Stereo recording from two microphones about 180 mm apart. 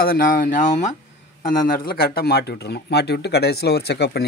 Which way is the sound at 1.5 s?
55° left (ahead or behind).